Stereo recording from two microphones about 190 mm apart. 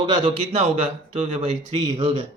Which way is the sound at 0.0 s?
30° right (ahead or behind).